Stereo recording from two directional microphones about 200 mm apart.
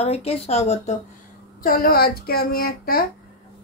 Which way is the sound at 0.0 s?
30° left (ahead or behind).